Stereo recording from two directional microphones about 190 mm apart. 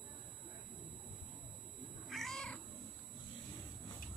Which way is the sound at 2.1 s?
Centre (ahead or behind).